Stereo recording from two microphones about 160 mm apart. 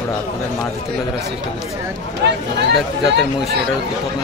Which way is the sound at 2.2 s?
90° right.